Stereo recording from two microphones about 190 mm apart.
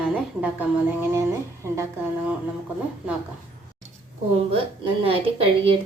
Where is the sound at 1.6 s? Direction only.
15° right (ahead or behind).